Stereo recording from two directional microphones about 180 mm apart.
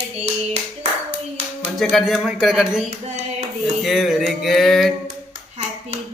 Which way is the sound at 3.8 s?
Centre (ahead or behind).